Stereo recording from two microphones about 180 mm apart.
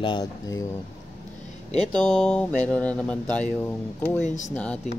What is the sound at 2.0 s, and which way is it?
Speech, 5° left (ahead or behind).